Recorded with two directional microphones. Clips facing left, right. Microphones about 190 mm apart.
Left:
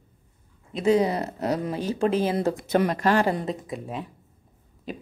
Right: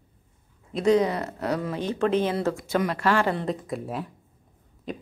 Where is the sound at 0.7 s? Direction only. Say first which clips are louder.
Even; 5° left (ahead or behind).